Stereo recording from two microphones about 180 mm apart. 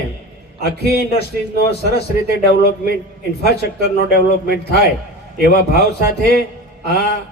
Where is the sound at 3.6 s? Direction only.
65° left (ahead or behind).